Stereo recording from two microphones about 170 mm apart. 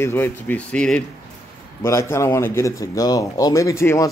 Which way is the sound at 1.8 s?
15° left (ahead or behind).